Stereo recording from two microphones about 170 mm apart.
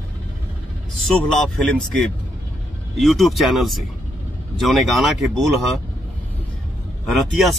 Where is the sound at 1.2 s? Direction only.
5° left (ahead or behind).